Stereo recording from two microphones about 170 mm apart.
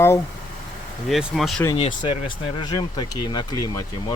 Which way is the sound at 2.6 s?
25° left (ahead or behind).